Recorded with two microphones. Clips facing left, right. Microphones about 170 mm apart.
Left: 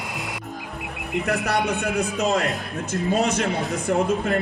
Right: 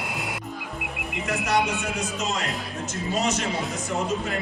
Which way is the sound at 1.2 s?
60° left (ahead or behind).